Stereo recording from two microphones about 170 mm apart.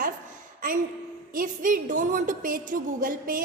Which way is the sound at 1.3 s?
55° right (ahead or behind).